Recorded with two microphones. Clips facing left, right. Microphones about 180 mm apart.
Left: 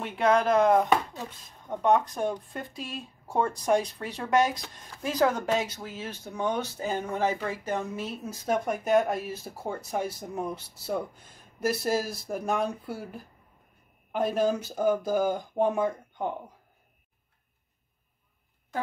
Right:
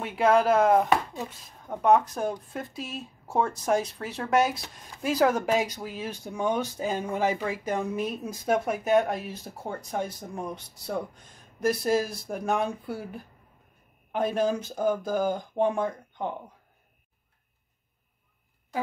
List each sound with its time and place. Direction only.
0.0 s speech: 5° right (ahead or behind)